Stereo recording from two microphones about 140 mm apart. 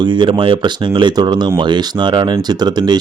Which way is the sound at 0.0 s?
35° right (ahead or behind).